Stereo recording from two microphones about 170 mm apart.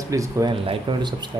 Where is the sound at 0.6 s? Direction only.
30° right (ahead or behind).